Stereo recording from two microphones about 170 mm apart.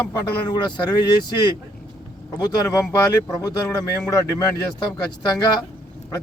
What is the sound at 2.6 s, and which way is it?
Speech, 20° left (ahead or behind).